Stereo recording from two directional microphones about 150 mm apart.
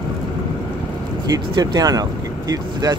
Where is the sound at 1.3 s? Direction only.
25° right (ahead or behind).